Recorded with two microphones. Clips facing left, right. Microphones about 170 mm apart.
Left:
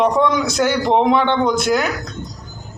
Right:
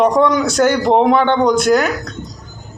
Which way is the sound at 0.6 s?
45° right (ahead or behind).